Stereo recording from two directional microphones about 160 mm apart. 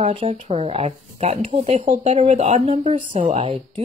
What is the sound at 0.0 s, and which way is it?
Speech, 35° right (ahead or behind).